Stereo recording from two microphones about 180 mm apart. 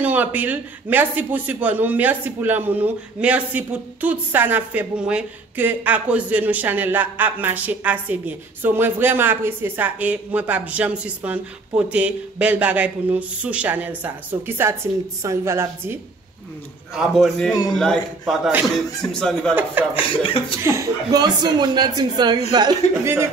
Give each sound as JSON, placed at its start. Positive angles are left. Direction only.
{"t": 0.0, "sound": "a man's voice", "side_deg": -10}
{"t": 16.9, "sound": "a man's voice", "side_deg": 0}
{"t": 18.2, "sound": "a man's voice", "side_deg": -5}
{"t": 19.1, "sound": "a man's voice", "side_deg": 5}
{"t": 19.9, "sound": "speech", "side_deg": 30}
{"t": 20.6, "sound": "speech", "side_deg": -20}